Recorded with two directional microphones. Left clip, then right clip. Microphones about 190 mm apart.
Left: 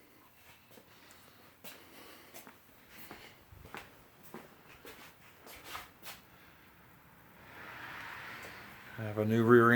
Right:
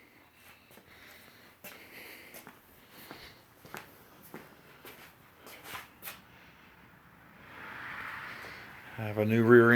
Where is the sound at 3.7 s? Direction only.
55° right (ahead or behind).